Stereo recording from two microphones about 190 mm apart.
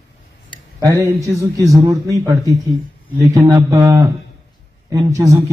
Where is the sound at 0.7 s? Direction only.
15° right (ahead or behind).